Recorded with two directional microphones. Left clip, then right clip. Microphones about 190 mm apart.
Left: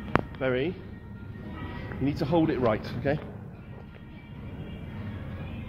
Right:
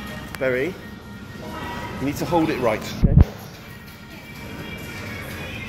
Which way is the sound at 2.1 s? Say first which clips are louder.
Right 4 dB; 35° left (ahead or behind).